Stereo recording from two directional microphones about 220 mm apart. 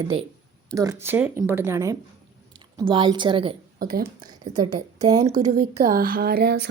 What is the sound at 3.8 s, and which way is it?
Speech, 40° right (ahead or behind).